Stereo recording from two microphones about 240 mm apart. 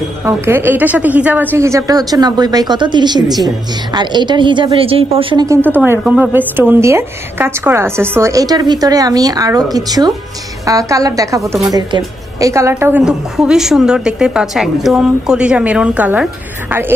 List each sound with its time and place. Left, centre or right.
0.2 s a woman's voice: centre